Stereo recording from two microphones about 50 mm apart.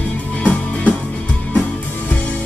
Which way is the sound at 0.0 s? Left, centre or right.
Left.